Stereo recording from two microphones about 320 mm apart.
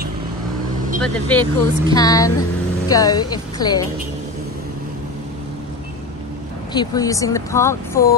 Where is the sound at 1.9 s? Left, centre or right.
Centre.